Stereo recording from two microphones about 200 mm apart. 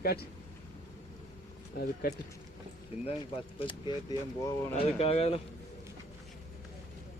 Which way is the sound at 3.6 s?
25° left (ahead or behind).